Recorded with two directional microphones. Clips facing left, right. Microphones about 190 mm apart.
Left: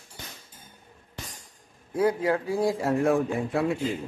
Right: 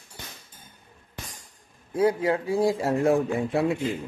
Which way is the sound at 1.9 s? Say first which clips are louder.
Right 1 dB; 25° right (ahead or behind).